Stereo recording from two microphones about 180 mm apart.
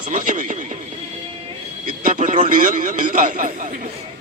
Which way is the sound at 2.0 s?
45° right (ahead or behind).